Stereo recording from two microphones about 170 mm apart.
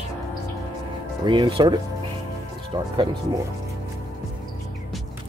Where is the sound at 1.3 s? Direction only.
30° right (ahead or behind).